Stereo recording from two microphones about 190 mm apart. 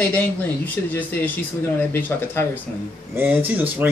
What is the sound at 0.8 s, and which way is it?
Speech, 10° left (ahead or behind).